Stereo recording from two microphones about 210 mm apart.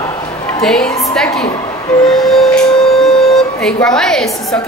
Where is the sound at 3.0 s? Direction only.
5° left (ahead or behind).